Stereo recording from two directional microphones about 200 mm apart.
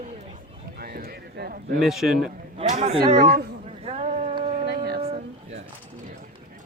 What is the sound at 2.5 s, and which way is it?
Speech, 30° right (ahead or behind).